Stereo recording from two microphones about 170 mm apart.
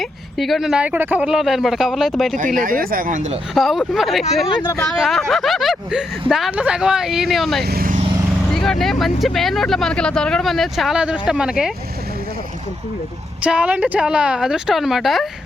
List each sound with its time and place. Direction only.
0.0 s speech: centre (ahead or behind)
2.6 s speech: 55° right (ahead or behind)
3.5 s speech: centre (ahead or behind)
4.4 s speech: 20° left (ahead or behind)
4.8 s speech: centre (ahead or behind)
7.6 s vehicle: 65° right (ahead or behind)
8.5 s speech: centre (ahead or behind)
13.4 s speech: 5° right (ahead or behind)